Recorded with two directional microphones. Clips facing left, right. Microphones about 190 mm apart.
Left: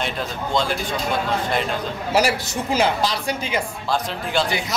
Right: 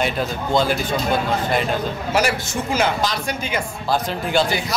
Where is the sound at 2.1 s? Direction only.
35° left (ahead or behind).